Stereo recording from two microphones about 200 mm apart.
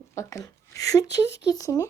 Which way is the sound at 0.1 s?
15° left (ahead or behind).